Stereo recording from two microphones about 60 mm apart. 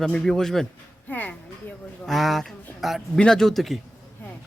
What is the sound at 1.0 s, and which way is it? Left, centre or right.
Music, left.